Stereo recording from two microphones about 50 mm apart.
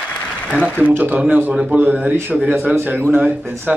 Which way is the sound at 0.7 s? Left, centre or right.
Right.